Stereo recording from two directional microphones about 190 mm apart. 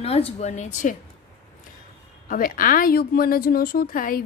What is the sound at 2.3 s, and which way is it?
Speech, 45° left (ahead or behind).